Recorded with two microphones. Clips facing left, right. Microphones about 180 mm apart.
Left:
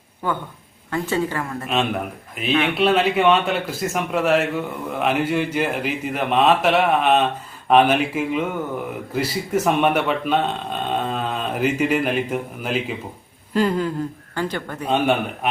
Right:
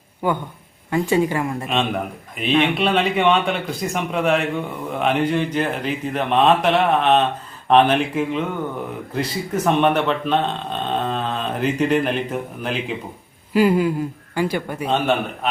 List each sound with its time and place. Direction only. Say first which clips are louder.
0.2 s speech: right 3 dB; 15° right (ahead or behind)
1.6 s a man's voice: even; 5° left (ahead or behind)
13.5 s speech: right 4 dB; 10° right (ahead or behind)